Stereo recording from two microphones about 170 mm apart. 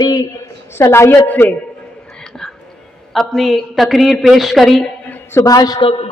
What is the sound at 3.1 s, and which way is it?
A woman's voice, centre (ahead or behind).